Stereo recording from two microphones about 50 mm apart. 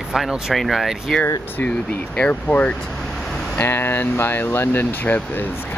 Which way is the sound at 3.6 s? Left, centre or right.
Left.